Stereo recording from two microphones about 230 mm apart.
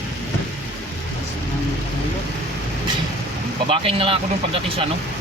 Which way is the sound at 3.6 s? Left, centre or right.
Right.